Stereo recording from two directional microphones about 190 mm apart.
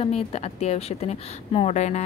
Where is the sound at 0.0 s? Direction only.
35° left (ahead or behind).